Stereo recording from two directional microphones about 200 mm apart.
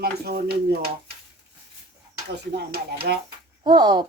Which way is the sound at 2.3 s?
50° right (ahead or behind).